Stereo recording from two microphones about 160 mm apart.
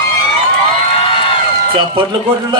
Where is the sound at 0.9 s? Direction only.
35° left (ahead or behind).